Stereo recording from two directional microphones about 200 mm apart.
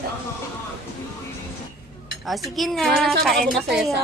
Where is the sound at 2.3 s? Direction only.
Centre (ahead or behind).